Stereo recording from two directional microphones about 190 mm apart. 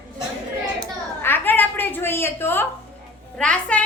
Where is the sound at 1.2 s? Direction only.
10° left (ahead or behind).